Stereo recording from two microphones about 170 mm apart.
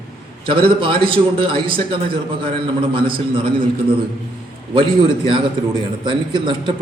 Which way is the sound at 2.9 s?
30° right (ahead or behind).